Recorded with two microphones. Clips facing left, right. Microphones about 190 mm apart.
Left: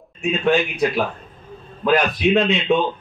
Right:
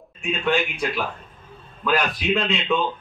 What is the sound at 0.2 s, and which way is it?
A man's voice, 40° left (ahead or behind).